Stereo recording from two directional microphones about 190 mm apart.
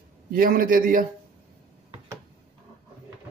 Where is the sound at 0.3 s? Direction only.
50° right (ahead or behind).